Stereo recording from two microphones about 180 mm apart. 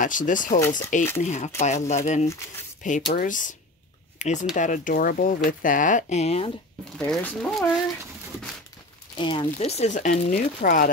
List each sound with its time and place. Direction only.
0.0 s speech: 45° left (ahead or behind)
0.6 s speech: 20° left (ahead or behind)
1.2 s speech: 40° left (ahead or behind)
7.1 s speech: centre (ahead or behind)
9.1 s speech: 25° left (ahead or behind)
9.5 s speech: 35° left (ahead or behind)